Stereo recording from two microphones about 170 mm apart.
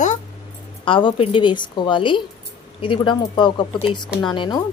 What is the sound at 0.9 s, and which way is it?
A woman's voice, 30° left (ahead or behind).